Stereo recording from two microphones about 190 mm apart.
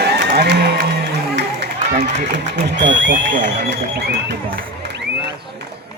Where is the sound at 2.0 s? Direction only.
60° right (ahead or behind).